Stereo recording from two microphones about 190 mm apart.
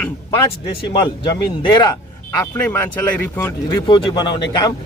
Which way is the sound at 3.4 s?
25° left (ahead or behind).